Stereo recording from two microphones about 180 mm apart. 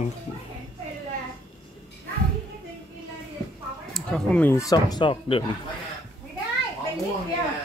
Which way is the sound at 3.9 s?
5° left (ahead or behind).